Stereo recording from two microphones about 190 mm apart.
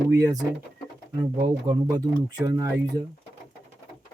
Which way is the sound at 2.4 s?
15° right (ahead or behind).